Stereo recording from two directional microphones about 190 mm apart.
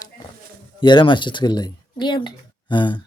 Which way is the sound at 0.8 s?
25° left (ahead or behind).